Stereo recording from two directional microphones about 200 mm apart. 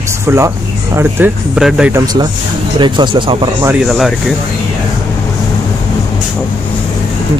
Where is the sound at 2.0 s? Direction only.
20° right (ahead or behind).